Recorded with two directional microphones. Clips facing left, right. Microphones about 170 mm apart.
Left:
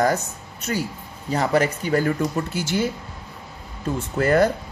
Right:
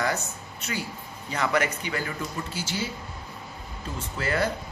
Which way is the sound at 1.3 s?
35° left (ahead or behind).